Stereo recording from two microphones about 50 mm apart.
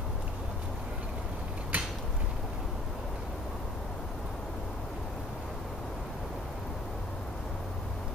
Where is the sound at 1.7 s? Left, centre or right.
Right.